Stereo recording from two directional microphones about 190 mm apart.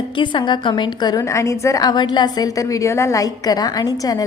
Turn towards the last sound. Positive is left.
turn(degrees=20)  # may be behind; listen again after turning